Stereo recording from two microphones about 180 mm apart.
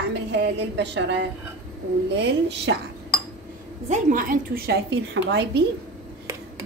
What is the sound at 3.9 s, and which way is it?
A woman's voice, 50° right (ahead or behind).